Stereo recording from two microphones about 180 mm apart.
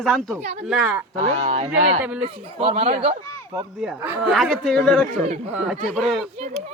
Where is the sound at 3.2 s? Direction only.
15° left (ahead or behind).